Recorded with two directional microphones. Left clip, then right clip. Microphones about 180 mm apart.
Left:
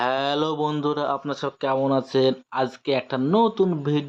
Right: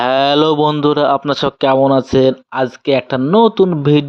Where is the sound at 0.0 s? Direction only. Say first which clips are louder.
Right 11 dB; 40° right (ahead or behind).